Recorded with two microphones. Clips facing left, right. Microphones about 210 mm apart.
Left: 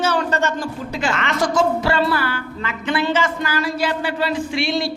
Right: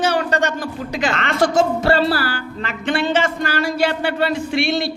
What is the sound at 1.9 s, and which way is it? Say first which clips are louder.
Music: right 1 dB; 35° right (ahead or behind).